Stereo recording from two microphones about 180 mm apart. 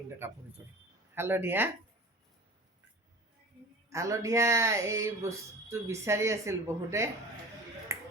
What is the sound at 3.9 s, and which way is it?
Speech, 15° right (ahead or behind).